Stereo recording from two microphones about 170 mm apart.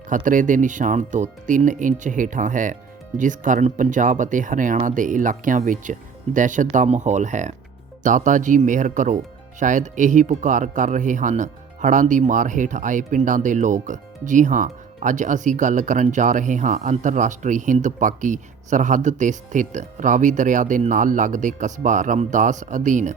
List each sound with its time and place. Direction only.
0.1 s speech: 50° right (ahead or behind)